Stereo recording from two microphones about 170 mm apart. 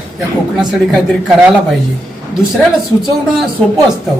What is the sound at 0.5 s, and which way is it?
Speech, centre (ahead or behind).